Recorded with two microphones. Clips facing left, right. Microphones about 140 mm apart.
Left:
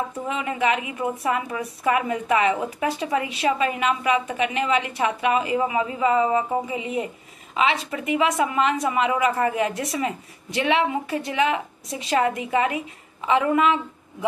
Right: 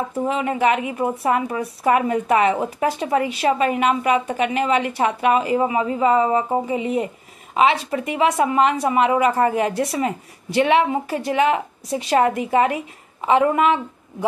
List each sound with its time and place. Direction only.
0.1 s a woman's voice: 35° right (ahead or behind)